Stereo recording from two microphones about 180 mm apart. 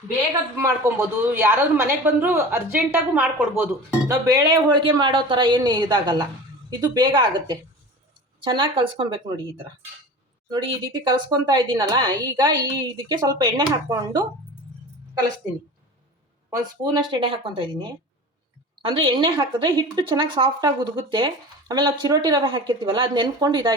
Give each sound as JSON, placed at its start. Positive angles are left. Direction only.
{"t": 0.5, "sound": "a woman's voice", "side_deg": -15}
{"t": 10.5, "sound": "speech", "side_deg": -25}
{"t": 16.5, "sound": "speech", "side_deg": -25}